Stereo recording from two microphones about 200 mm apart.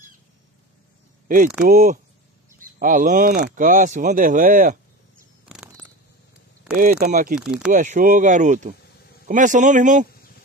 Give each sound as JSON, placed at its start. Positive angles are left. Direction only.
{"t": 1.7, "sound": "speech", "side_deg": -40}
{"t": 5.4, "sound": "a sound", "side_deg": -5}
{"t": 6.8, "sound": "speech", "side_deg": -45}
{"t": 7.3, "sound": "speech", "side_deg": -5}
{"t": 7.7, "sound": "speech", "side_deg": -40}